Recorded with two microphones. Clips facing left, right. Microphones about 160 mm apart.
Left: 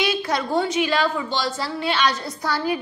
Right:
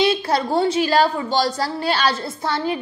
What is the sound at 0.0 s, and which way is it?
A woman's voice, 30° right (ahead or behind).